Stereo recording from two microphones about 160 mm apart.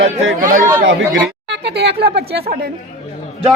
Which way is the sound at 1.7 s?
90° right.